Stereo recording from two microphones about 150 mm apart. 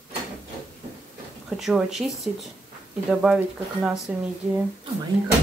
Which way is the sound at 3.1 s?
5° right (ahead or behind).